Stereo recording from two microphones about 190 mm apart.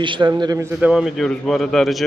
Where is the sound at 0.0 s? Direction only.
25° right (ahead or behind).